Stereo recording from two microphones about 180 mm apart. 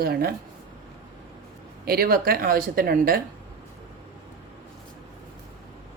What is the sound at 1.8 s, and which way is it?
A woman's voice, 55° right (ahead or behind).